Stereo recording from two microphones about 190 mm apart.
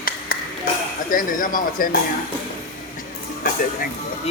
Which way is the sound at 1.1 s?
45° left (ahead or behind).